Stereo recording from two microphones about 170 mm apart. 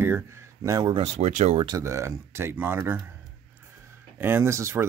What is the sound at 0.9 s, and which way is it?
Speech, 40° right (ahead or behind).